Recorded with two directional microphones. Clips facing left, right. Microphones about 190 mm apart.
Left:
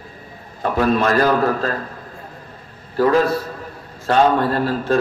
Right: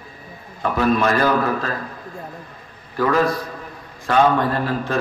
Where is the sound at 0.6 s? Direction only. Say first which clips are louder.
Left 1 dB; 40° left (ahead or behind).